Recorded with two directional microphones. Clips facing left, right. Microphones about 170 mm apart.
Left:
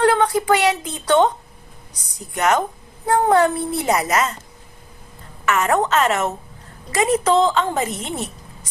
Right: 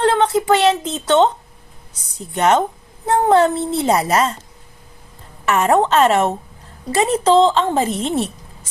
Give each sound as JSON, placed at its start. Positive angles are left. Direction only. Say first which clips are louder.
{"t": 0.0, "sound": "a sound", "louder": "right 1 dB", "side_deg": -25}
{"t": 3.1, "sound": "a woman's voice", "louder": "right 2 dB", "side_deg": -25}
{"t": 5.5, "sound": "a woman's voice", "louder": "right 3 dB", "side_deg": -30}